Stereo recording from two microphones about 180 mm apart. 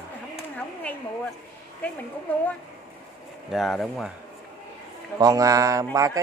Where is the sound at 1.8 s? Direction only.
10° left (ahead or behind).